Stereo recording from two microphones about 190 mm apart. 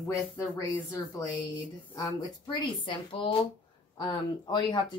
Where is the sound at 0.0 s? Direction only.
15° left (ahead or behind).